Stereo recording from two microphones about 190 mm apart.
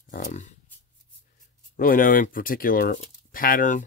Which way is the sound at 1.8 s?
50° left (ahead or behind).